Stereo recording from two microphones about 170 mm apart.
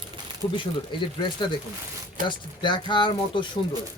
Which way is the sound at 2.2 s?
55° right (ahead or behind).